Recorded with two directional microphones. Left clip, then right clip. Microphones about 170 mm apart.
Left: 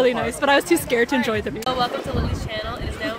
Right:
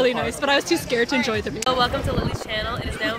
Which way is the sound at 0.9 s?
20° left (ahead or behind).